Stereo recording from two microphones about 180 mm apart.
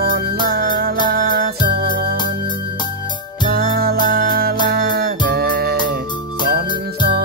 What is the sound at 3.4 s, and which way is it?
Music, 60° right (ahead or behind).